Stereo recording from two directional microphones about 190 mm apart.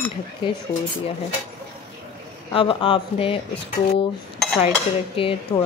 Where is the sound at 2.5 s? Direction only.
25° left (ahead or behind).